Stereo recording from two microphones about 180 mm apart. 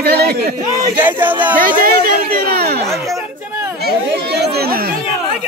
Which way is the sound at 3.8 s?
60° right (ahead or behind).